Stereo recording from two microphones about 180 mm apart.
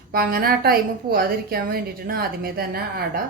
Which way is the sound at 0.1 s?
55° right (ahead or behind).